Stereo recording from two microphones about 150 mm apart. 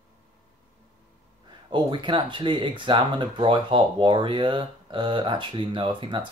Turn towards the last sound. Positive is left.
turn(degrees=-30)  # may be behind; listen again after turning